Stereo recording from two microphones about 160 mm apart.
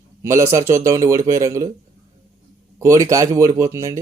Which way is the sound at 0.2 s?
20° right (ahead or behind).